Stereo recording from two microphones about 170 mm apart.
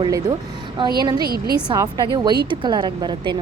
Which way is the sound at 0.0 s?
20° right (ahead or behind).